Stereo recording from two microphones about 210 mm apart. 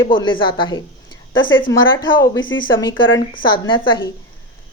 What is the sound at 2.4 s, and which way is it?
Speech, 65° left (ahead or behind).